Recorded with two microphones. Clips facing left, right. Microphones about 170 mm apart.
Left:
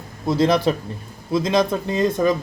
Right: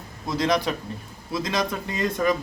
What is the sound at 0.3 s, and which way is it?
A man's voice, 30° left (ahead or behind).